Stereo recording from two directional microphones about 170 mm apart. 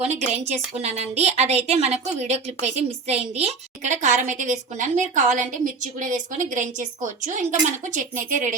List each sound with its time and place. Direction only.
0.0 s a woman's voice: 40° right (ahead or behind)